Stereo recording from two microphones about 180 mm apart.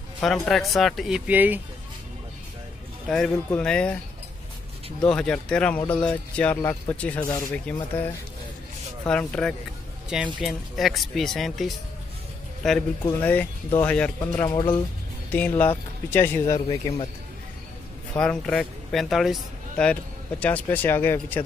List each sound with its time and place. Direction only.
0.2 s speech: centre (ahead or behind)
3.1 s speech: 5° left (ahead or behind)
5.0 s speech: 5° left (ahead or behind)
16.6 s a man's voice: 35° left (ahead or behind)
18.1 s speech: 5° left (ahead or behind)